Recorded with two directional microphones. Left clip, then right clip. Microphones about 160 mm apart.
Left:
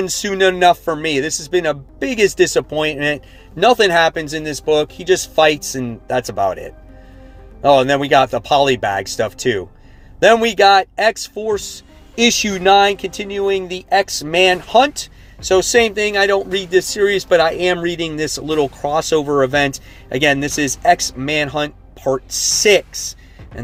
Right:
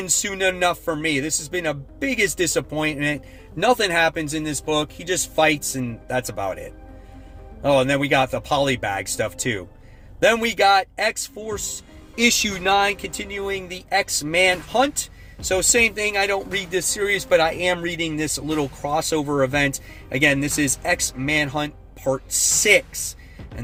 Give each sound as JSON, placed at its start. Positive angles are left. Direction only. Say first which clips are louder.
{"t": 0.0, "sound": "speech", "louder": "left 6 dB", "side_deg": 35}
{"t": 7.6, "sound": "speech", "louder": "left 6 dB", "side_deg": 35}
{"t": 12.1, "sound": "speech", "louder": "left 4 dB", "side_deg": 25}